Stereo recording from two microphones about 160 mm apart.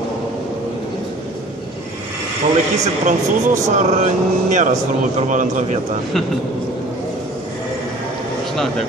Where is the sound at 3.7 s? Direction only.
50° right (ahead or behind).